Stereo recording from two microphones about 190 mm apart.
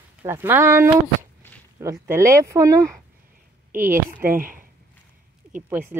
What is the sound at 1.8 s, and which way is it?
Speech, 15° right (ahead or behind).